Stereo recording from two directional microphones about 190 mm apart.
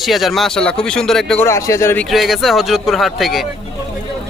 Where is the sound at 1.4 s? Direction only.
15° left (ahead or behind).